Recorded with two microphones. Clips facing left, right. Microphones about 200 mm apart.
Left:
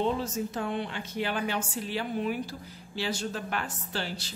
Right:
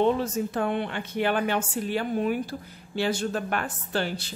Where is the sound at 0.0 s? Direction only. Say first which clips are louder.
Right 5 dB; 60° right (ahead or behind).